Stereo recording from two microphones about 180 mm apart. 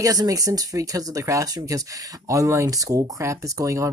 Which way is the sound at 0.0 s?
20° right (ahead or behind).